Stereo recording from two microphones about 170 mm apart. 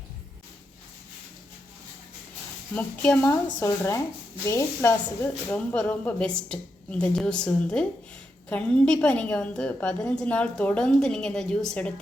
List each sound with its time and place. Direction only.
2.7 s a woman's voice: 10° left (ahead or behind)